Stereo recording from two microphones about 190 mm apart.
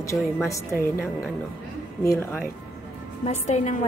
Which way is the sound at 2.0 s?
15° left (ahead or behind).